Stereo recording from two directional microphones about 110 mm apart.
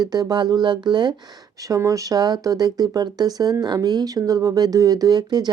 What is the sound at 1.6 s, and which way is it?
Speech, 30° right (ahead or behind).